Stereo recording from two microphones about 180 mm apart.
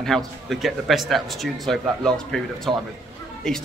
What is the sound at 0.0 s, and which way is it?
A man's voice, centre (ahead or behind).